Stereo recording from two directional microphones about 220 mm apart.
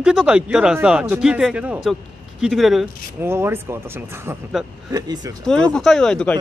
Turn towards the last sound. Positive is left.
turn(degrees=5)  # may be behind; listen again after turning